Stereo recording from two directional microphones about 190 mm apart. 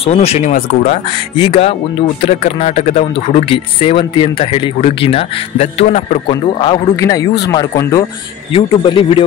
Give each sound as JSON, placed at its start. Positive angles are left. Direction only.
{"t": 0.0, "sound": "speech", "side_deg": 35}
{"t": 6.6, "sound": "a man's voice", "side_deg": 20}